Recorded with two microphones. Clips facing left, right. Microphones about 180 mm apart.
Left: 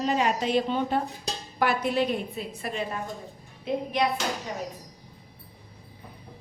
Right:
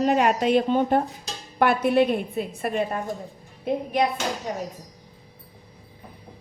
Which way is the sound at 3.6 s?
45° right (ahead or behind).